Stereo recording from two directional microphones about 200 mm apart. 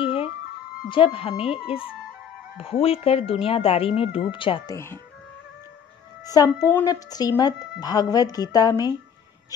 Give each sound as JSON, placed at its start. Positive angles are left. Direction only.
{"t": 0.0, "sound": "music", "side_deg": 30}
{"t": 0.8, "sound": "a woman's voice", "side_deg": 25}
{"t": 6.2, "sound": "a woman's voice", "side_deg": 20}